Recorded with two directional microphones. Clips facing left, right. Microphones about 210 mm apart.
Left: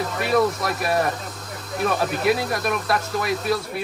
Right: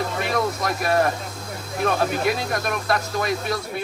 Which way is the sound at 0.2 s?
5° left (ahead or behind).